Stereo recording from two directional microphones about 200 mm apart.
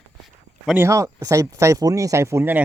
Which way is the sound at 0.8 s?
15° right (ahead or behind).